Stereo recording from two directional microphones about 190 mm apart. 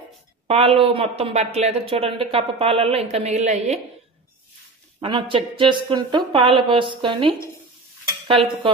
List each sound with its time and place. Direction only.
0.5 s a woman's voice: 30° right (ahead or behind)
5.0 s speech: 25° right (ahead or behind)